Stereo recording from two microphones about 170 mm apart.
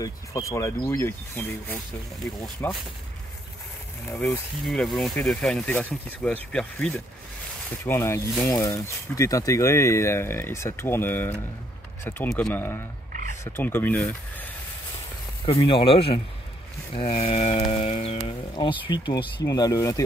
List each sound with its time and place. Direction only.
0.0 s speech: 20° left (ahead or behind)
2.6 s speech: 15° left (ahead or behind)
4.1 s speech: 5° left (ahead or behind)
15.4 s speech: 30° left (ahead or behind)